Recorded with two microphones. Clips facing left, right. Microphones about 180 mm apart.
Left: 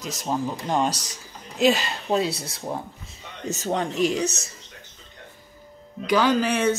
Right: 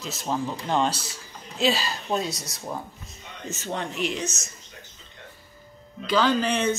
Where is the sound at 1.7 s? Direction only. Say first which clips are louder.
Left 3 dB; 25° left (ahead or behind).